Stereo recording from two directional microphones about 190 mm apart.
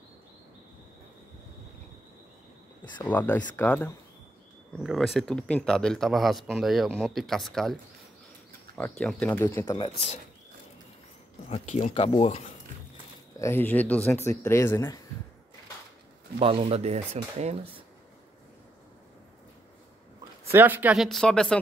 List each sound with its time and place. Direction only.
3.0 s speech: 10° left (ahead or behind)
11.4 s speech: 35° left (ahead or behind)
13.4 s speech: 10° left (ahead or behind)
16.3 s speech: 30° right (ahead or behind)
20.5 s speech: 10° right (ahead or behind)